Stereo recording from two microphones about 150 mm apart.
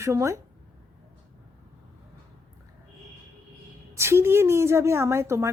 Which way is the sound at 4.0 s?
15° right (ahead or behind).